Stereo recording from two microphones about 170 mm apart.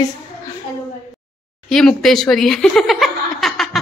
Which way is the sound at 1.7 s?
5° left (ahead or behind).